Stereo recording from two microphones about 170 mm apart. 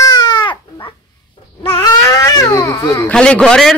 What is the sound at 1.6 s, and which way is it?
Baby cry, 20° left (ahead or behind).